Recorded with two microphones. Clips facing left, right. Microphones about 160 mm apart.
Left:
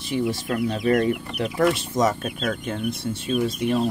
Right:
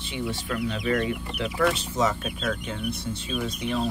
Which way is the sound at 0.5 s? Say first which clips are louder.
Left 4 dB; 40° left (ahead or behind).